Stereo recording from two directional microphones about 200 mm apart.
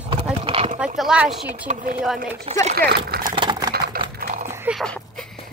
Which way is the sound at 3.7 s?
50° right (ahead or behind).